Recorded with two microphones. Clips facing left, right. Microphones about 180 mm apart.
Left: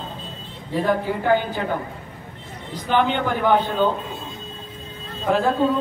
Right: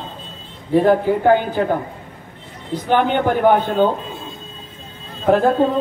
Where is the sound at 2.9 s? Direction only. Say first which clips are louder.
Right 4 dB; 50° right (ahead or behind).